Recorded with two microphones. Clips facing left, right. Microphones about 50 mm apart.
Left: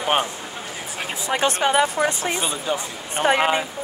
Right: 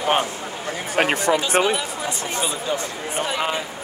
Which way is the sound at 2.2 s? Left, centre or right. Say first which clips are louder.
Left 1 dB; left.